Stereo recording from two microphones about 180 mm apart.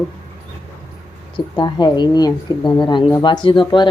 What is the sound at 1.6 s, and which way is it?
Speech, 25° left (ahead or behind).